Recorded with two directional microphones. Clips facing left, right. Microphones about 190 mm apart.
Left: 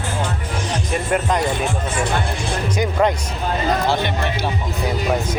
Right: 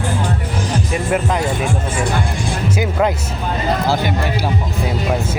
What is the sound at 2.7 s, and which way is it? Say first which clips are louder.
Speech: even; 5° right (ahead or behind).